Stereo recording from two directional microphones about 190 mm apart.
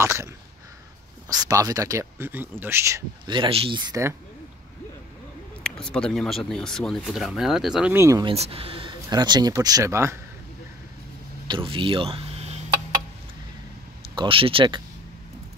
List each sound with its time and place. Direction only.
0.0 s throat clearing: 15° right (ahead or behind)
1.3 s speech: 20° right (ahead or behind)
3.3 s speech: 25° right (ahead or behind)
5.6 s speech: 5° left (ahead or behind); by 8.3 s 15° right (ahead or behind)
8.3 s speech: 30° right (ahead or behind); by 10.1 s 15° right (ahead or behind)
11.4 s speech: 25° right (ahead or behind)
14.1 s speech: 25° right (ahead or behind)